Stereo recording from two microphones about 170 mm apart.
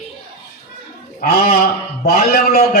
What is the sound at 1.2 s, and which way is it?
A man's voice, 60° left (ahead or behind).